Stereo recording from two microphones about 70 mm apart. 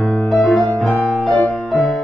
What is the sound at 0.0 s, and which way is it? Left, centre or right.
Music, centre.